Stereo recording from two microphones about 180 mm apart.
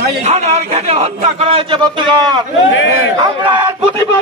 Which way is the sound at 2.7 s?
90° left.